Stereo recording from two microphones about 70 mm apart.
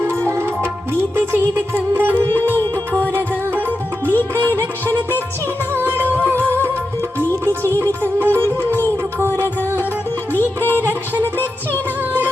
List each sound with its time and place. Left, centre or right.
0.3 s music: right
1.7 s music: right
10.8 s music: right